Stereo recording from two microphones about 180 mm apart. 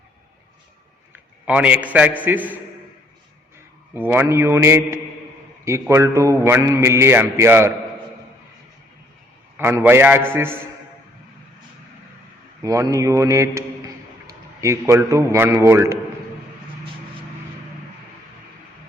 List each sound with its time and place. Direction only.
1.1 s a man's voice: 5° right (ahead or behind)
3.9 s a man's voice: 10° right (ahead or behind)
9.6 s a man's voice: 10° right (ahead or behind)
12.6 s a man's voice: 20° right (ahead or behind)